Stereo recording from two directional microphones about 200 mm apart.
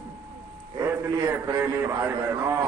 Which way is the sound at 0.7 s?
10° right (ahead or behind).